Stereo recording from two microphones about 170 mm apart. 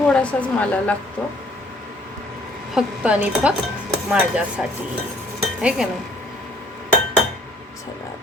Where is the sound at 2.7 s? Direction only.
5° right (ahead or behind).